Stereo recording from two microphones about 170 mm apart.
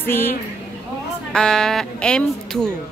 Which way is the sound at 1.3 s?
5° left (ahead or behind).